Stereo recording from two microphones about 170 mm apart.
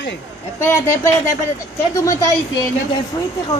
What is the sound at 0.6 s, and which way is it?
A woman's voice, 15° left (ahead or behind).